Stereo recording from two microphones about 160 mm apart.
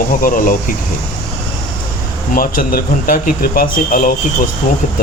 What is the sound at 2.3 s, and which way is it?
A man's voice, 60° left (ahead or behind).